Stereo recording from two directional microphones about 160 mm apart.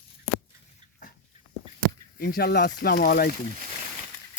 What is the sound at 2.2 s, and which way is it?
Speech, 70° left (ahead or behind).